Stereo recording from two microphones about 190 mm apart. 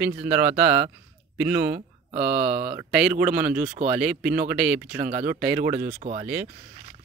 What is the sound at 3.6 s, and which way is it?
Speech, 35° right (ahead or behind).